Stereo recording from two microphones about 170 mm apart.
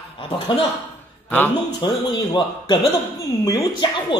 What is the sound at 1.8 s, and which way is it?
A man's voice, 30° left (ahead or behind).